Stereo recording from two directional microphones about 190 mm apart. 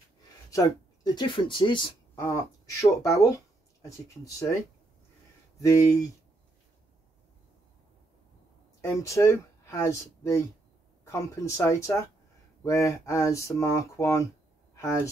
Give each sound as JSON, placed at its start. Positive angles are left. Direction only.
{"t": 0.5, "sound": "speech", "side_deg": 20}
{"t": 5.6, "sound": "speech", "side_deg": 15}
{"t": 8.8, "sound": "speech", "side_deg": 15}